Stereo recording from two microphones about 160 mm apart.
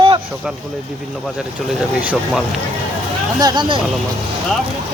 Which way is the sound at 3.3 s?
25° right (ahead or behind).